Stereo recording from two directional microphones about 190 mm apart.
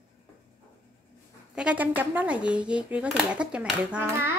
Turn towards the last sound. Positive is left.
turn(degrees=-10)  # may be behind; listen again after turning